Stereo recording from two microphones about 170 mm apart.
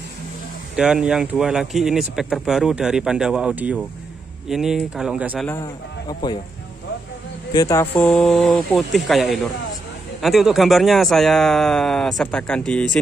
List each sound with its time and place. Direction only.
0.7 s speech: 5° right (ahead or behind)
5.5 s speech: 20° left (ahead or behind)
7.5 s speech: 20° left (ahead or behind)